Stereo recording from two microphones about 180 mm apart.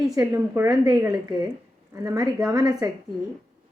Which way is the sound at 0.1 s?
15° right (ahead or behind).